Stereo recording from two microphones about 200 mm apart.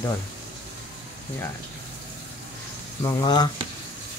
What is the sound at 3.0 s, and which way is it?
Speech, 20° left (ahead or behind).